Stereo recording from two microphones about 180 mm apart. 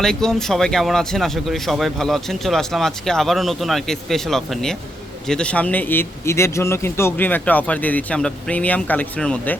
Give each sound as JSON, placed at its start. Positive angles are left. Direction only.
{"t": 0.0, "sound": "a man's voice", "side_deg": 5}